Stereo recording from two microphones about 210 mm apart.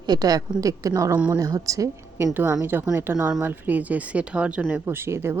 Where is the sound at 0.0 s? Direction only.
20° right (ahead or behind).